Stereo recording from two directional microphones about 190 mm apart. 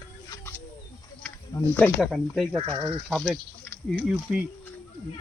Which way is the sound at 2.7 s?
30° right (ahead or behind).